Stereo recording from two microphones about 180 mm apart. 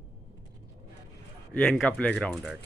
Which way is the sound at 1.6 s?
5° left (ahead or behind).